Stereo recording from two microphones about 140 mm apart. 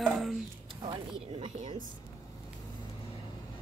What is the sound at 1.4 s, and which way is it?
Speech, 50° right (ahead or behind).